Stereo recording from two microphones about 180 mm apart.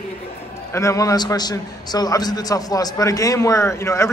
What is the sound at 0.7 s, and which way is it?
A man's voice, 15° left (ahead or behind).